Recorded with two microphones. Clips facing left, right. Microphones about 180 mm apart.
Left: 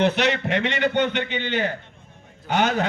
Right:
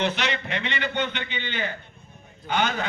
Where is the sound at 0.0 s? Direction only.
60° left (ahead or behind).